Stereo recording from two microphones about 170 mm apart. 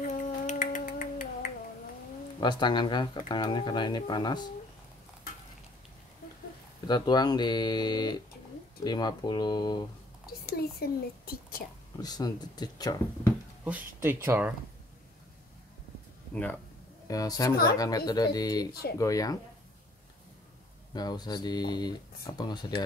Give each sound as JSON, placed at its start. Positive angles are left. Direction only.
{"t": 0.0, "sound": "a sound", "side_deg": 50}
{"t": 2.4, "sound": "speech", "side_deg": 25}
{"t": 6.9, "sound": "speech", "side_deg": 25}
{"t": 10.4, "sound": "speech", "side_deg": 65}
{"t": 12.0, "sound": "speech", "side_deg": 25}
{"t": 13.7, "sound": "speech", "side_deg": -10}
{"t": 17.1, "sound": "speech", "side_deg": 20}
{"t": 20.9, "sound": "speech", "side_deg": 25}